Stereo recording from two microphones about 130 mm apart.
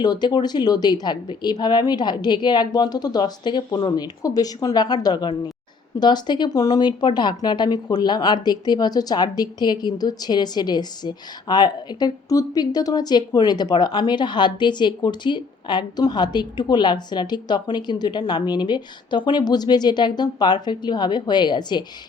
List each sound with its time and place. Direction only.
0.0 s speech: 35° left (ahead or behind)